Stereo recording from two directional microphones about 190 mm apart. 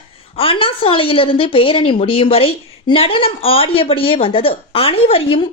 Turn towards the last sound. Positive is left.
turn(degrees=30)  # may be behind; listen again after turning